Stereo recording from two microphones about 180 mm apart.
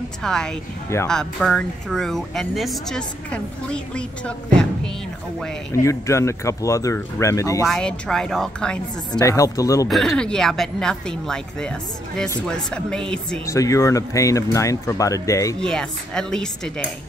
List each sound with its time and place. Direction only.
0.2 s speech: 5° left (ahead or behind)
5.7 s speech: 15° left (ahead or behind)
7.6 s speech: 5° left (ahead or behind)
9.2 s speech: 15° left (ahead or behind)
9.8 s speech: centre (ahead or behind)
13.5 s speech: 15° left (ahead or behind)
15.6 s speech: 5° left (ahead or behind)